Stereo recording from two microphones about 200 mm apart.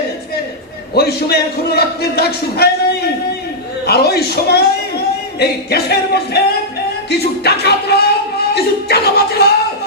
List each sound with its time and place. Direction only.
0.9 s speech: 50° left (ahead or behind)
3.8 s speech: 50° left (ahead or behind)
8.5 s music: 55° left (ahead or behind)